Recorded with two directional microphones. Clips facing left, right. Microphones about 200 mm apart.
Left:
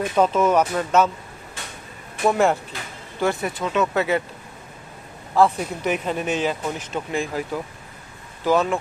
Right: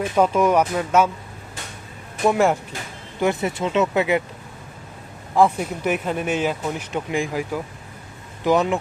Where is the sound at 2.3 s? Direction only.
10° right (ahead or behind).